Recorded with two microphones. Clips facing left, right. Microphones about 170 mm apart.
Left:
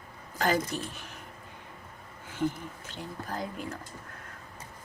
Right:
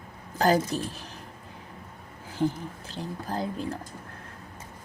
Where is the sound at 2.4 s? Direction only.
35° right (ahead or behind).